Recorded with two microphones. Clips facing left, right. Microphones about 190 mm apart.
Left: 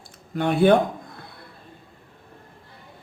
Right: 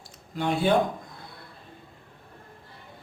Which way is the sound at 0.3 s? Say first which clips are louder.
Left 6 dB; 60° left (ahead or behind).